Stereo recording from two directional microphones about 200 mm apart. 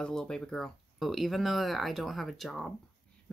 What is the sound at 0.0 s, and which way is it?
Speech, 5° left (ahead or behind).